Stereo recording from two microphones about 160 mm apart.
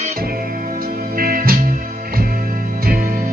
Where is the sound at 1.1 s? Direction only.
65° right (ahead or behind).